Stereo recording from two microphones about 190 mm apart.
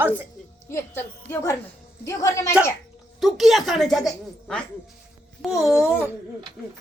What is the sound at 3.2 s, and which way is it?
A woman's voice, centre (ahead or behind).